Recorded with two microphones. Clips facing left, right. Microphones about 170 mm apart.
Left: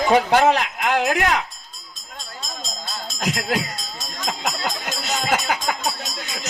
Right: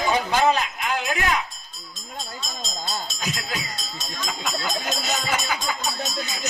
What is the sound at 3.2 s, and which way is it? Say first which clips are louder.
A man's voice: left 7 dB; 75° left (ahead or behind).